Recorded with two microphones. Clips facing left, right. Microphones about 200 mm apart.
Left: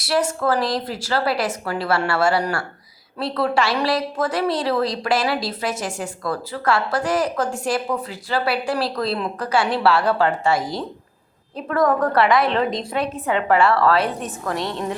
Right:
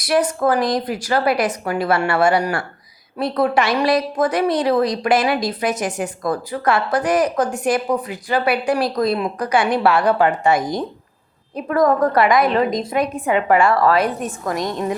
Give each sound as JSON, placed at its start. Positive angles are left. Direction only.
{"t": 0.0, "sound": "a woman's voice", "side_deg": -15}